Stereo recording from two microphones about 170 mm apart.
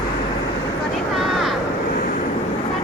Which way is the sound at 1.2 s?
Centre (ahead or behind).